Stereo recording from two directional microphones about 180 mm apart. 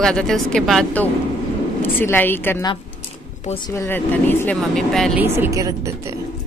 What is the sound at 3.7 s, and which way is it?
Speech, 10° left (ahead or behind).